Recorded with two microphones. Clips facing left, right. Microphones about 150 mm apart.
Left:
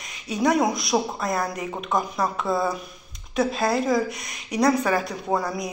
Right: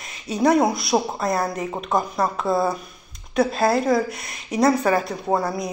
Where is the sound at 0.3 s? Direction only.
Centre (ahead or behind).